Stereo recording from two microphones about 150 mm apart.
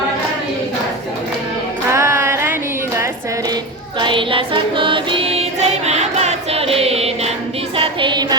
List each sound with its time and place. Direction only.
1.9 s music: 20° right (ahead or behind)
4.0 s music: 35° right (ahead or behind)
7.8 s music: 30° right (ahead or behind)